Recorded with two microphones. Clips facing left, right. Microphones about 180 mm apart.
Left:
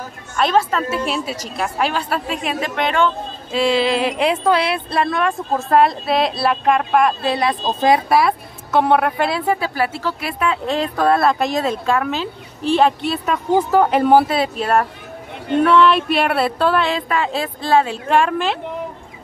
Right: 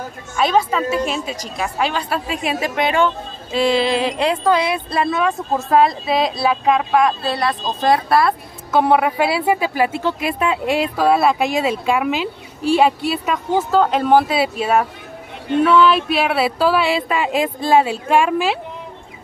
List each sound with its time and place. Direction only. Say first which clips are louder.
0.4 s speech: even; 5° right (ahead or behind)
3.5 s speech: even; centre (ahead or behind)
7.2 s speech: left 2 dB; 20° left (ahead or behind)
8.7 s speech: right 1 dB; 5° right (ahead or behind)
13.6 s speech: left 1 dB; 15° left (ahead or behind)
14.3 s speech: even; 5° right (ahead or behind)